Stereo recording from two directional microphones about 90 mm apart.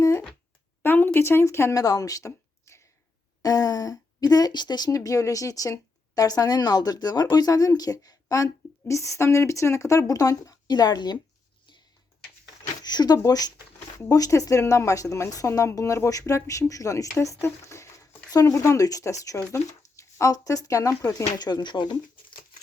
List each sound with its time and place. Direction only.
0.8 s speech: 20° left (ahead or behind)
1.8 s a sound: 40° left (ahead or behind)
3.4 s speech: 40° left (ahead or behind)
4.9 s a woman's voice: 40° left (ahead or behind)
12.8 s a woman's voice: 50° left (ahead or behind)
21.3 s speech: 50° left (ahead or behind)